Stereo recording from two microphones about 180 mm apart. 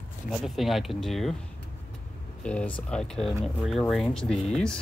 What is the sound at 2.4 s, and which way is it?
Speech, 5° left (ahead or behind).